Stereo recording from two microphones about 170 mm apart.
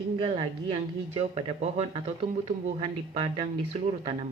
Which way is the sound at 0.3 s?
30° right (ahead or behind).